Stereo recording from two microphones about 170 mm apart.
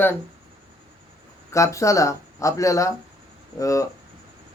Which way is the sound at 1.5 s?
20° left (ahead or behind).